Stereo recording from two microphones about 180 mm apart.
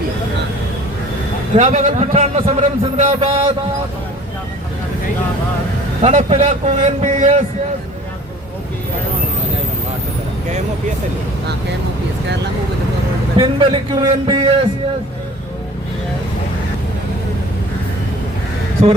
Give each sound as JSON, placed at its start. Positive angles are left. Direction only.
{"t": 1.5, "sound": "a man's voice", "side_deg": -45}
{"t": 6.0, "sound": "a man's voice", "side_deg": -40}
{"t": 13.3, "sound": "a man's voice", "side_deg": -30}